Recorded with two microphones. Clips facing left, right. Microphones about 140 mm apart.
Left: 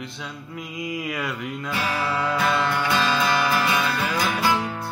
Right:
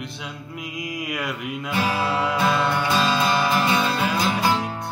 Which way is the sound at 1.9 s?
20° right (ahead or behind).